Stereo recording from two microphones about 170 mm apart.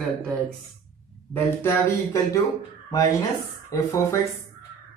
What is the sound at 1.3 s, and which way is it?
Speech, 15° left (ahead or behind).